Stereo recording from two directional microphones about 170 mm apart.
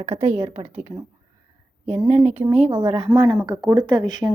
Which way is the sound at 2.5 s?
35° right (ahead or behind).